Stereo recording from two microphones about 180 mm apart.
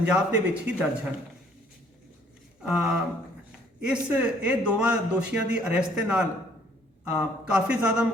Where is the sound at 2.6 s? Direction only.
5° right (ahead or behind).